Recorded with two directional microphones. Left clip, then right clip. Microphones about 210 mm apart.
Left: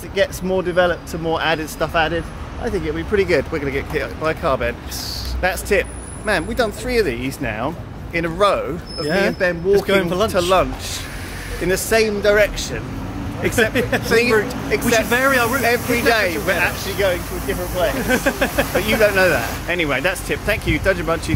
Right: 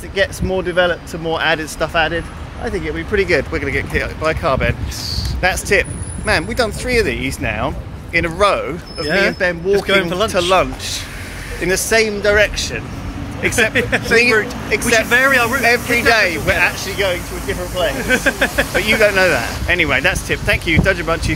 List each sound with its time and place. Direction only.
0.1 s speech: 5° right (ahead or behind)
9.7 s speech: 15° left (ahead or behind)
10.5 s speech: 10° right (ahead or behind)
13.7 s speech: 25° left (ahead or behind)
14.7 s speech: 5° right (ahead or behind)
15.0 s speech: 20° left (ahead or behind)
15.6 s speech: 10° right (ahead or behind)
18.0 s speech: 20° left (ahead or behind)
18.8 s speech: 10° right (ahead or behind)